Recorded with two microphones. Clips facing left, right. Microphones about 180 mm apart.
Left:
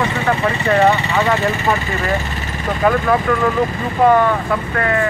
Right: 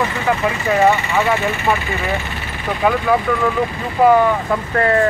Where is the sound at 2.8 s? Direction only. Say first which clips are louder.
Left 1 dB; 5° right (ahead or behind).